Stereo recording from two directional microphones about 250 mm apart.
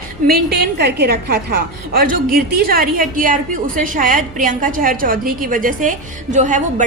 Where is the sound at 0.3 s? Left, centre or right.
Right.